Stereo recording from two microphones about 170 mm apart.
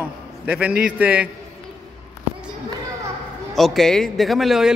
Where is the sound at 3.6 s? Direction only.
Centre (ahead or behind).